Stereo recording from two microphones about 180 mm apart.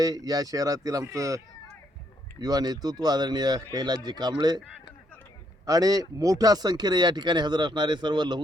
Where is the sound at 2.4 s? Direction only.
20° right (ahead or behind).